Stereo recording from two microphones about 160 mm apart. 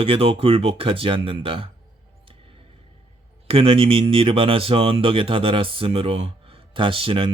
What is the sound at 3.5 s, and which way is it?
Speech, 35° right (ahead or behind).